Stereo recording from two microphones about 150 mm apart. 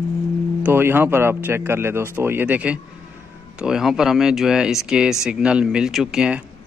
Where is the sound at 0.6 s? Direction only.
15° right (ahead or behind).